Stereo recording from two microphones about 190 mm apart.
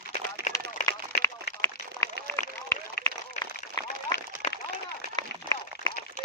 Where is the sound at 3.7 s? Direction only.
20° left (ahead or behind).